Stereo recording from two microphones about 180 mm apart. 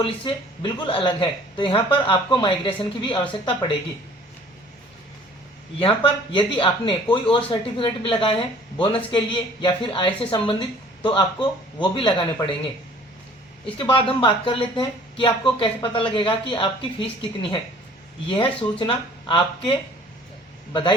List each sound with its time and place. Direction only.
0.0 s a woman's voice: 25° left (ahead or behind)
5.8 s a woman's voice: 30° left (ahead or behind)
13.7 s a woman's voice: 30° left (ahead or behind)